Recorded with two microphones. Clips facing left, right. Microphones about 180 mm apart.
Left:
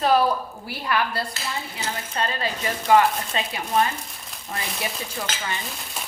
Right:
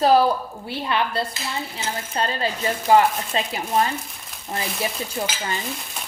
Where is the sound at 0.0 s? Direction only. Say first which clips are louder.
Right 3 dB; 30° right (ahead or behind).